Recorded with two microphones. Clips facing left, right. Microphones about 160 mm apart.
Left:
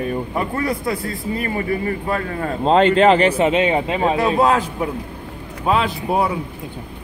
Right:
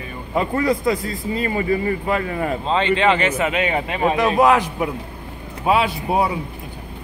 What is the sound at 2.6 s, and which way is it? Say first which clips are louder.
A man's voice: left 6 dB; 45° left (ahead or behind).